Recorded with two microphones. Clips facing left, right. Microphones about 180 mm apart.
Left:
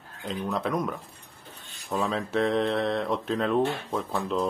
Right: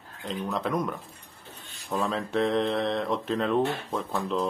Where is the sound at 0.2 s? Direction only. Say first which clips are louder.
Left 1 dB; centre (ahead or behind).